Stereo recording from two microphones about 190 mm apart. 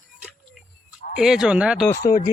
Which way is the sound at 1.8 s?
15° left (ahead or behind).